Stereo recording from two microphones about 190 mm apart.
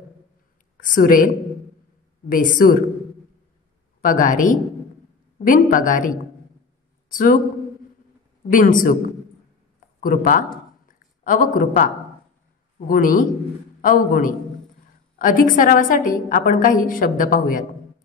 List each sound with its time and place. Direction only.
0.7 s a woman's voice: 45° left (ahead or behind)
4.0 s a woman's voice: 45° left (ahead or behind)
8.5 s a woman's voice: 45° left (ahead or behind)
9.9 s a woman's voice: 45° left (ahead or behind)